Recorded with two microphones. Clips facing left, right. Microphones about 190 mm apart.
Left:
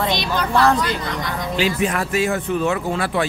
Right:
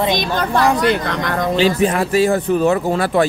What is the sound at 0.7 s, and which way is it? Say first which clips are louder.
Speech: right 6 dB; 55° right (ahead or behind).